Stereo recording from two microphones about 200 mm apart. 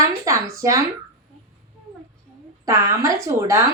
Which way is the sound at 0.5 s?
15° right (ahead or behind).